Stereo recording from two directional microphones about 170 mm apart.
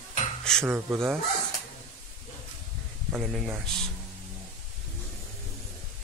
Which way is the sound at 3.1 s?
Centre (ahead or behind).